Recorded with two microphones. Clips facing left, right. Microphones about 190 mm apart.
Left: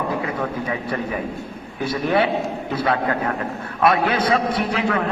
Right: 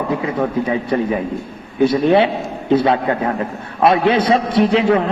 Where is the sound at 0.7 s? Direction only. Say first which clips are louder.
Right 7 dB; 25° right (ahead or behind).